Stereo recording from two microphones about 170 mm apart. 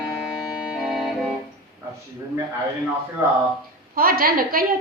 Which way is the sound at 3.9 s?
60° right (ahead or behind).